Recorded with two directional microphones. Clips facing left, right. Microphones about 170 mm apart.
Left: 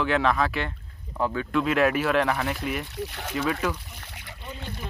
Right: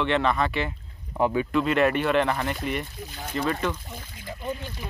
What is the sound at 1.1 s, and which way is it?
Speech, 20° right (ahead or behind).